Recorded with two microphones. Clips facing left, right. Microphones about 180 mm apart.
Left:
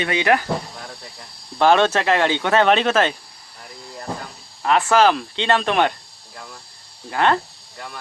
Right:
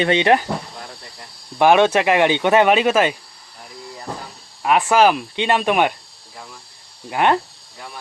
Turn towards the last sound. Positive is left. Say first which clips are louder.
# right 1 dB
turn(degrees=-15)  # may be behind; listen again after turning